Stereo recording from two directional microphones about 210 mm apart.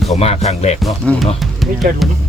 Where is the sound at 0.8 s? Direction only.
Centre (ahead or behind).